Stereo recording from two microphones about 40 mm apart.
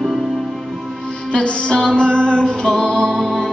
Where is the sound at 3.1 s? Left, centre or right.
Centre.